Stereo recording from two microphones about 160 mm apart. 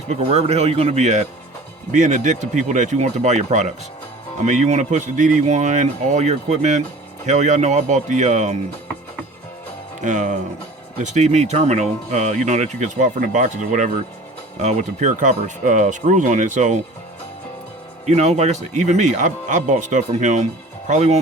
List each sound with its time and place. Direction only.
0.2 s speech: 40° right (ahead or behind)
10.0 s speech: 50° right (ahead or behind)
18.0 s speech: 45° right (ahead or behind)